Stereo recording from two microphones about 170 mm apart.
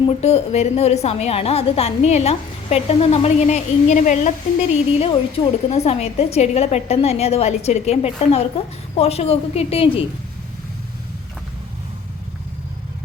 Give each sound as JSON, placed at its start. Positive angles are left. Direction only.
{"t": 0.2, "sound": "a woman's voice", "side_deg": 40}
{"t": 4.7, "sound": "a woman's voice", "side_deg": 35}